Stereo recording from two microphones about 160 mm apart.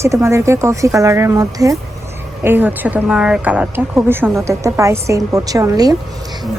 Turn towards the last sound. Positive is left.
turn(degrees=-20)  # may be behind; listen again after turning